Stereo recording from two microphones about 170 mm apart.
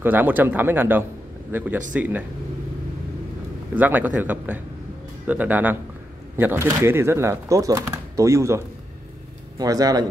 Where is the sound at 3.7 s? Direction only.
10° right (ahead or behind).